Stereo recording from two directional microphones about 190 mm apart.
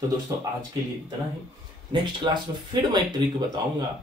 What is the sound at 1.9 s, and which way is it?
Speech, 25° right (ahead or behind).